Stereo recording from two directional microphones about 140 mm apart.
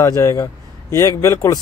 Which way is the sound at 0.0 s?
25° left (ahead or behind).